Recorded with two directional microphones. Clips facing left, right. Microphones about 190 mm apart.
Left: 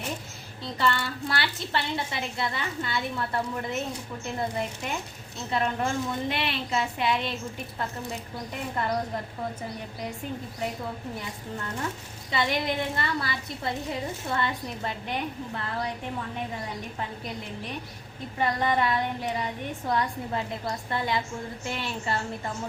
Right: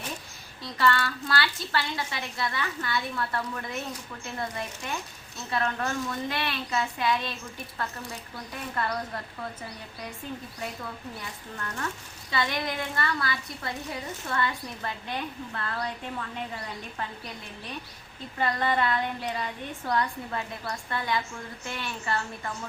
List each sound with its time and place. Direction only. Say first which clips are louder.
0.6 s a woman's voice: right 1 dB; 25° left (ahead or behind)
8.7 s a woman's voice: left 3 dB; 20° left (ahead or behind)
11.5 s a woman's voice: left 2 dB; 20° left (ahead or behind)
18.3 s a woman's voice: left 1 dB; 15° left (ahead or behind)